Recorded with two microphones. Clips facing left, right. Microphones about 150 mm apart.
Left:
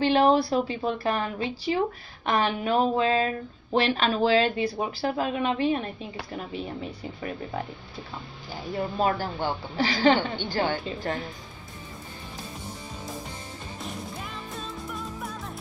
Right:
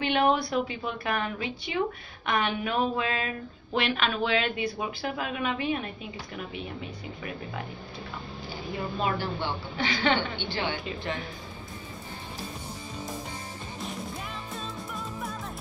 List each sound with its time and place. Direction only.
0.0 s speech: 35° left (ahead or behind)
8.9 s a woman's voice: 40° left (ahead or behind)